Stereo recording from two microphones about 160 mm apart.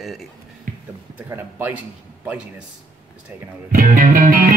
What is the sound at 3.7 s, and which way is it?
Music, 60° right (ahead or behind).